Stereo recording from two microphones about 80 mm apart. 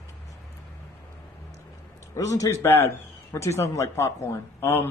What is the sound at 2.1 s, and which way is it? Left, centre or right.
Speech, left.